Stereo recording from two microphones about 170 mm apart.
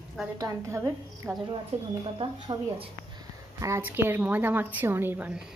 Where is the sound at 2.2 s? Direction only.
30° right (ahead or behind).